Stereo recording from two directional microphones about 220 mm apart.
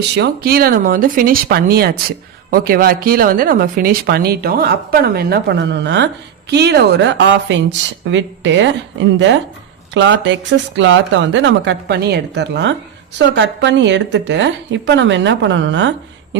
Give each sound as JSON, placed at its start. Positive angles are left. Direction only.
{"t": 0.2, "sound": "speech", "side_deg": -45}